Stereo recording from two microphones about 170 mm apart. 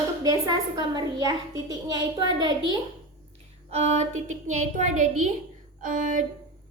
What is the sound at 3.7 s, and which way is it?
A woman's voice, 45° right (ahead or behind).